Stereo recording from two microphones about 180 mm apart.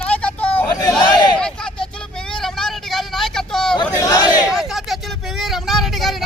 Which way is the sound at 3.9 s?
20° left (ahead or behind).